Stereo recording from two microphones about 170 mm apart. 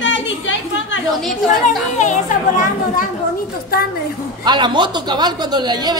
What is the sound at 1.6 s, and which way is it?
Speech, 45° left (ahead or behind).